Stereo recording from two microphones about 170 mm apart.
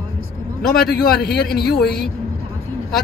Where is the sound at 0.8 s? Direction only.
65° left (ahead or behind).